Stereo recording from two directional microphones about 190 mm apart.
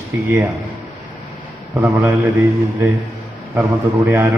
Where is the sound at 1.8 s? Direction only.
15° right (ahead or behind).